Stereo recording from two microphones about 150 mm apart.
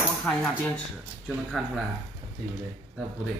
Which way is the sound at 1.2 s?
Centre (ahead or behind).